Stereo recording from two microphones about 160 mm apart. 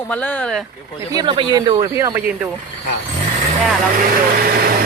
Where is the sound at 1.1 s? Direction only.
30° right (ahead or behind).